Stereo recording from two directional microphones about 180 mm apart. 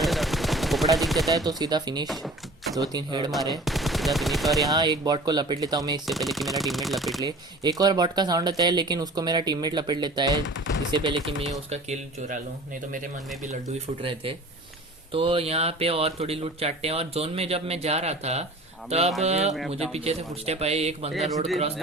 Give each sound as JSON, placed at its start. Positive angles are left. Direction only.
{"t": 0.0, "sound": "machine gun", "side_deg": 0}
{"t": 1.5, "sound": "speech", "side_deg": -20}
{"t": 2.0, "sound": "door", "side_deg": 0}
{"t": 2.9, "sound": "speech", "side_deg": -25}
{"t": 3.6, "sound": "speech", "side_deg": 0}
{"t": 4.6, "sound": "speech", "side_deg": -20}
{"t": 6.1, "sound": "speech", "side_deg": 0}
{"t": 7.2, "sound": "speech", "side_deg": -20}
{"t": 10.4, "sound": "speech", "side_deg": 90}
{"t": 10.9, "sound": "speech", "side_deg": -25}
{"t": 13.4, "sound": "speech", "side_deg": -40}
{"t": 15.1, "sound": "speech", "side_deg": -30}
{"t": 21.1, "sound": "speech", "side_deg": 0}